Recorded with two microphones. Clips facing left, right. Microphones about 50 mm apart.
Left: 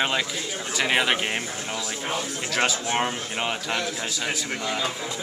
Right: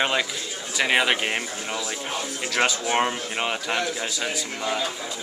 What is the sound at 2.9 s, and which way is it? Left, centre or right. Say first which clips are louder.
A man's voice: right 2 dB; centre.